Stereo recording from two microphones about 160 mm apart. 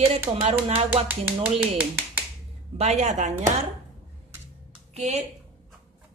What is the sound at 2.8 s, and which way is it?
Speech, 45° right (ahead or behind).